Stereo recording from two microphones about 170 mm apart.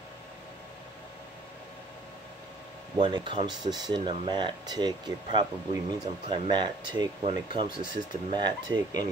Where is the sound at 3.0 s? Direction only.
30° right (ahead or behind).